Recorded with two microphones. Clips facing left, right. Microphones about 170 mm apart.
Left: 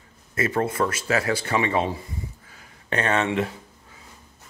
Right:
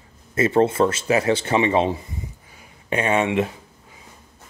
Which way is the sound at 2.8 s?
10° right (ahead or behind).